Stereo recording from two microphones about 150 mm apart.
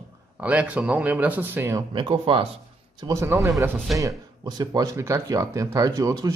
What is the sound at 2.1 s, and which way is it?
Speech, 40° right (ahead or behind).